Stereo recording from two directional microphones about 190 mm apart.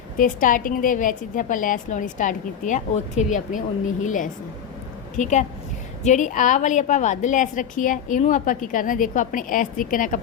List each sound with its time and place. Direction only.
0.2 s a woman's voice: 45° left (ahead or behind)